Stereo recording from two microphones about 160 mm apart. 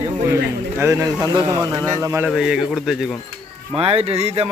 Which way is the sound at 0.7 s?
15° right (ahead or behind).